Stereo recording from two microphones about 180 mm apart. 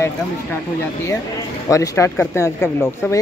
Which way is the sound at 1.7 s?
15° left (ahead or behind).